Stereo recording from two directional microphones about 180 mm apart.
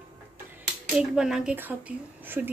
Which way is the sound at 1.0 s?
5° right (ahead or behind).